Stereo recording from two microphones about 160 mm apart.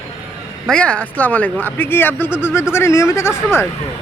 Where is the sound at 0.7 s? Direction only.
5° left (ahead or behind).